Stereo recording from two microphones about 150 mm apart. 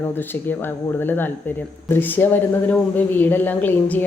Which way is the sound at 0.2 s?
15° left (ahead or behind).